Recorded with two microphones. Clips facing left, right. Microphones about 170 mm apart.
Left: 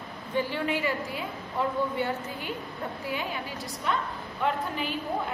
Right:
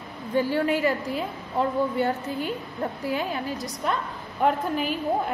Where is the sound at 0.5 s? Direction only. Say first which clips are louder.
Right 6 dB; 45° right (ahead or behind).